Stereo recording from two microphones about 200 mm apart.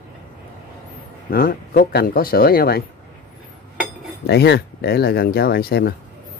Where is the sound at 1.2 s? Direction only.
45° left (ahead or behind).